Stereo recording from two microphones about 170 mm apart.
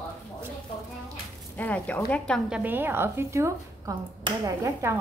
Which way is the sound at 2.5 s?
10° right (ahead or behind).